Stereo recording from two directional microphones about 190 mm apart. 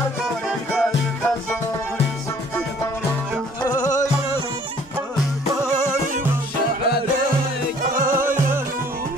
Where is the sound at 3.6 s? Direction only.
20° left (ahead or behind).